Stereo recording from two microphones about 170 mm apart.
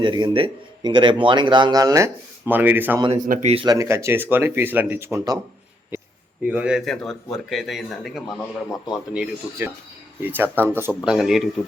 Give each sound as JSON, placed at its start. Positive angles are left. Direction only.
{"t": 0.0, "sound": "a man's voice", "side_deg": -25}
{"t": 3.0, "sound": "a man's voice", "side_deg": -25}
{"t": 3.2, "sound": "speech", "side_deg": -50}
{"t": 3.5, "sound": "a man's voice", "side_deg": -30}
{"t": 3.8, "sound": "speech", "side_deg": -15}
{"t": 6.4, "sound": "a man's voice", "side_deg": -5}
{"t": 11.1, "sound": "a man's voice", "side_deg": 0}